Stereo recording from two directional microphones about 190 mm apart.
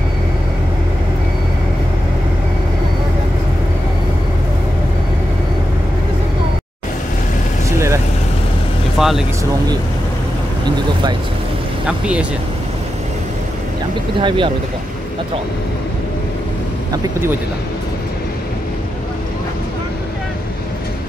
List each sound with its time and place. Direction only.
8.9 s vehicle: centre (ahead or behind)
14.2 s speech: 25° right (ahead or behind)